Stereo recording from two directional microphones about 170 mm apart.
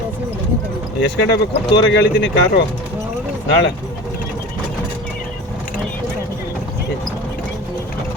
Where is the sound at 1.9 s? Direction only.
90° left.